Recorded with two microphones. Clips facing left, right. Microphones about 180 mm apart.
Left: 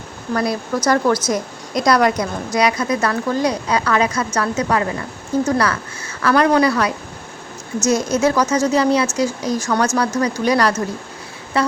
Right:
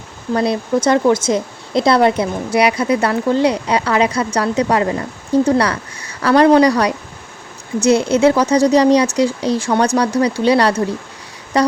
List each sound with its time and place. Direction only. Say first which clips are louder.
0.3 s speech: right 4 dB; 25° right (ahead or behind)